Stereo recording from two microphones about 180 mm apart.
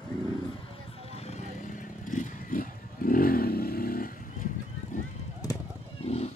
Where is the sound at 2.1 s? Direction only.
45° left (ahead or behind).